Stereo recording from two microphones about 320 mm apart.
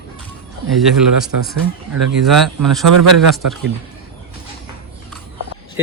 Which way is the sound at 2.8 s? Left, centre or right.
Right.